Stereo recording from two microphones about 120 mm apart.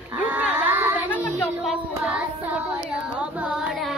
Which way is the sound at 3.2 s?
10° right (ahead or behind).